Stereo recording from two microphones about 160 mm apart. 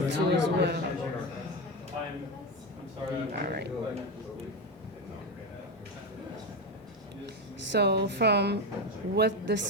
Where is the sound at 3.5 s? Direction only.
90° right.